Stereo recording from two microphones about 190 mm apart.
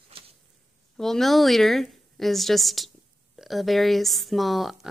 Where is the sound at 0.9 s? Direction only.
Centre (ahead or behind).